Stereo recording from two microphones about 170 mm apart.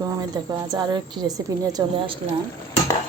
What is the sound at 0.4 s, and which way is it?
A woman's voice, 25° right (ahead or behind).